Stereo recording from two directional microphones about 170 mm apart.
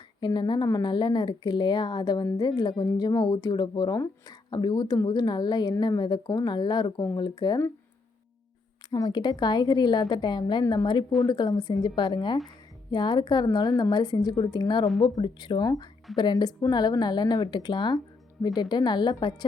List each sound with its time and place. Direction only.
0.2 s speech: 25° left (ahead or behind)
8.9 s speech: 25° left (ahead or behind)